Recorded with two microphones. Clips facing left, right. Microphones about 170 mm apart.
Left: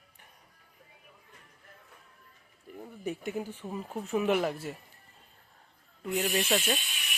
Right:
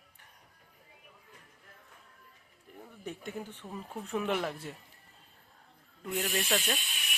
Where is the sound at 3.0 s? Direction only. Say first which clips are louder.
Left 6 dB; 10° left (ahead or behind).